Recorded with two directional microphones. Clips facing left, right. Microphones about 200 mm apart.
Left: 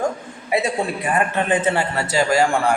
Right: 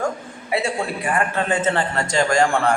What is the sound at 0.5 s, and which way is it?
A man's voice, 20° left (ahead or behind).